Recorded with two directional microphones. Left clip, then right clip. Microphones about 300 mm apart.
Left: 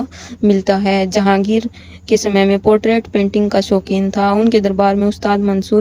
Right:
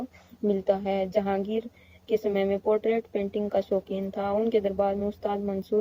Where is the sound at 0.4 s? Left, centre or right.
Left.